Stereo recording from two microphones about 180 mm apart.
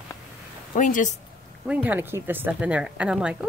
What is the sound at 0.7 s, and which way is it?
Speech, 45° left (ahead or behind).